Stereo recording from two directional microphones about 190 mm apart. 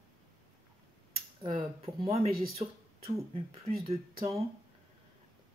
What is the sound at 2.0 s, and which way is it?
Speech, 30° right (ahead or behind).